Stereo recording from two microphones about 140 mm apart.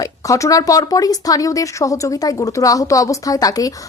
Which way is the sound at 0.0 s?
25° left (ahead or behind).